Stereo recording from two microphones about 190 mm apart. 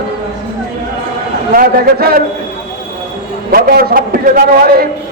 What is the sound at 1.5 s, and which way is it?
Speech, 50° right (ahead or behind).